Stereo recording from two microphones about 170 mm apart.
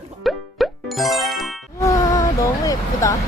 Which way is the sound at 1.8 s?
20° left (ahead or behind).